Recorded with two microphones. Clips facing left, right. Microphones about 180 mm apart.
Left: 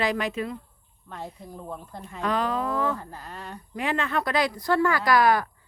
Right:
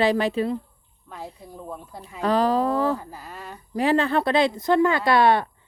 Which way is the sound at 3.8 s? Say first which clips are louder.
Right 7 dB; 35° right (ahead or behind).